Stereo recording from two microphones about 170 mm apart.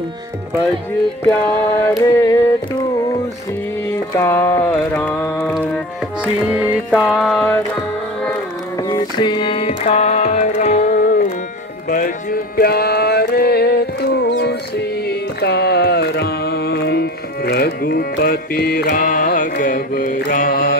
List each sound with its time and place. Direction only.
1.8 s a sound: 20° left (ahead or behind)
3.9 s a sound: 15° left (ahead or behind)
6.2 s music: 5° right (ahead or behind)
7.0 s mantra: centre (ahead or behind)
8.8 s carnatic music: 25° left (ahead or behind); by 11.3 s 45° left (ahead or behind)
11.9 s music: 55° left (ahead or behind)